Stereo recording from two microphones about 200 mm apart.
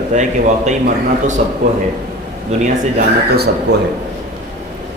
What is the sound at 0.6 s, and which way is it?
Speech, 40° right (ahead or behind).